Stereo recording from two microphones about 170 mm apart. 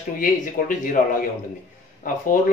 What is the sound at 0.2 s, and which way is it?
A man's voice, 55° left (ahead or behind).